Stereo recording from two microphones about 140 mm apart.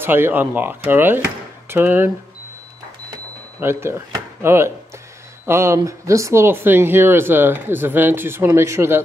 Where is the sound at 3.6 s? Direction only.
20° right (ahead or behind).